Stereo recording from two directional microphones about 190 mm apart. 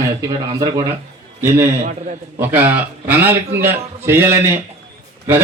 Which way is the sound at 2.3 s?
10° right (ahead or behind).